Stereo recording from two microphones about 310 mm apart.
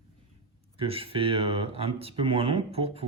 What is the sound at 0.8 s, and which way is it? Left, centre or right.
Speech, centre.